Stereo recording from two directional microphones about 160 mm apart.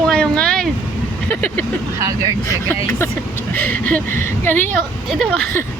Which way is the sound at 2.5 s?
20° left (ahead or behind).